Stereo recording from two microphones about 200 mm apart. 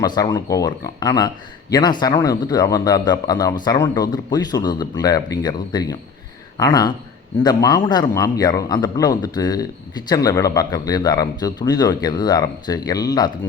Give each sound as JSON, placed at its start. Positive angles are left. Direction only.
{"t": 0.0, "sound": "a man's voice", "side_deg": 20}